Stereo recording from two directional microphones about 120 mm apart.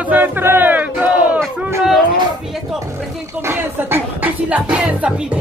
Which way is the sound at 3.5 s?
20° right (ahead or behind).